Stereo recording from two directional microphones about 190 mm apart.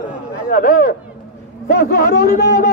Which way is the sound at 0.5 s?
45° left (ahead or behind).